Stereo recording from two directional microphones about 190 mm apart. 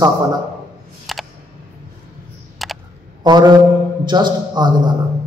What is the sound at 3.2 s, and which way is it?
Mantra, 20° right (ahead or behind).